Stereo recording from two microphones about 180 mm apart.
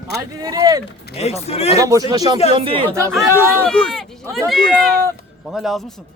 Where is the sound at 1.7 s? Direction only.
20° right (ahead or behind).